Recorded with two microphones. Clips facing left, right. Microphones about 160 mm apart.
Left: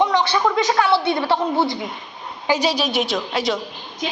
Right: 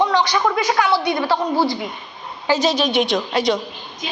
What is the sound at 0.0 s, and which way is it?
A woman's voice, 20° left (ahead or behind).